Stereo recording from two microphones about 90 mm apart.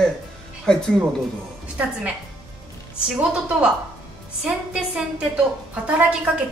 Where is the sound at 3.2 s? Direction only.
10° right (ahead or behind).